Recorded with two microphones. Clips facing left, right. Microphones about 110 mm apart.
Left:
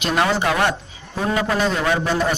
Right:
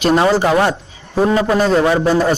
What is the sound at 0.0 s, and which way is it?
Speech, 35° right (ahead or behind).